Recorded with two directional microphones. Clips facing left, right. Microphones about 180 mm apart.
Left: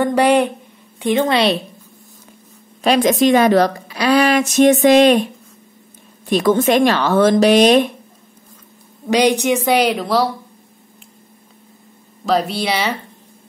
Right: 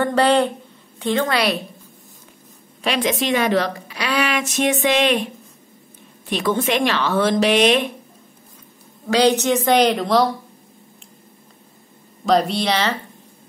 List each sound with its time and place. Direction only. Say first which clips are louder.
0.0 s a woman's voice: left 3 dB; 15° left (ahead or behind)
2.8 s a woman's voice: left 7 dB; 45° left (ahead or behind)
6.3 s speech: left 6 dB; 40° left (ahead or behind)
9.0 s a woman's voice: left 2 dB; 15° left (ahead or behind)
12.3 s speech: even; 5° left (ahead or behind)